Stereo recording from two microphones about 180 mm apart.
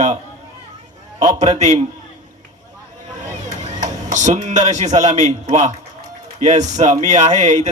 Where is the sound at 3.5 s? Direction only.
45° right (ahead or behind).